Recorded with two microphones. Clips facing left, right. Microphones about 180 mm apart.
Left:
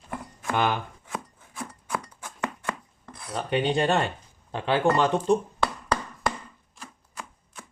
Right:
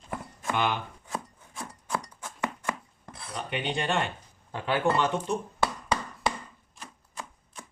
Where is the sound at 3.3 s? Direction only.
40° left (ahead or behind).